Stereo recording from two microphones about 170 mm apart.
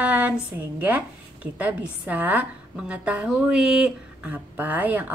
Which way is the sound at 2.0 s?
10° right (ahead or behind).